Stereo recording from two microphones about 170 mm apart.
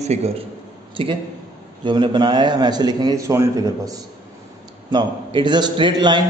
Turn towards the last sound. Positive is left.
turn(degrees=-25)  # may be behind; listen again after turning